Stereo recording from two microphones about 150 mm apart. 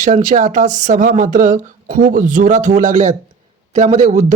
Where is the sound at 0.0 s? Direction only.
60° right (ahead or behind).